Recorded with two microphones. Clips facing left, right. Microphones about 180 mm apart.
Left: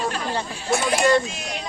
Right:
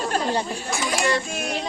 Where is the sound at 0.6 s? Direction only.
65° left (ahead or behind).